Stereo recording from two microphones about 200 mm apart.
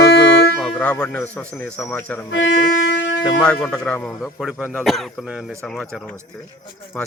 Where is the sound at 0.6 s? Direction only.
5° left (ahead or behind).